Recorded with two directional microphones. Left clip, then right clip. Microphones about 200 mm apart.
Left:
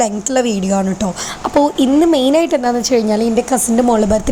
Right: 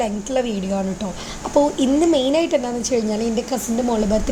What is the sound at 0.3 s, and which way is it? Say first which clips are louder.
A woman's voice: left 6 dB; 20° left (ahead or behind).